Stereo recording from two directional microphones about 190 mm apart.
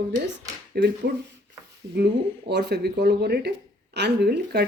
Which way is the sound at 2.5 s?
65° right (ahead or behind).